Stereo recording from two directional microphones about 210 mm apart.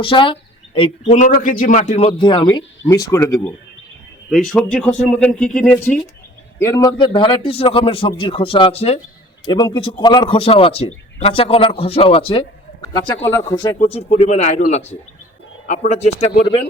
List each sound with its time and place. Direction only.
0.0 s speech: 25° left (ahead or behind)
4.3 s speech: centre (ahead or behind); by 12.5 s 25° left (ahead or behind)
13.5 s speech: 20° left (ahead or behind)